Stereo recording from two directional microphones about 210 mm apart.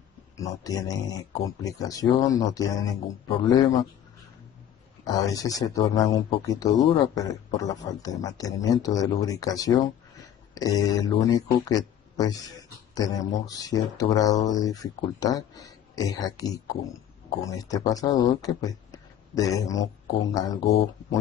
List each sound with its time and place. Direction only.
0.4 s speech: 15° left (ahead or behind)
5.0 s speech: 15° left (ahead or behind)